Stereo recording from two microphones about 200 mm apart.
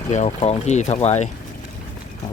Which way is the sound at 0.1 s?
35° left (ahead or behind).